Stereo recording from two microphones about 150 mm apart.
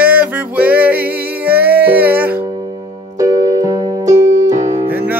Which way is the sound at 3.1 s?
20° right (ahead or behind).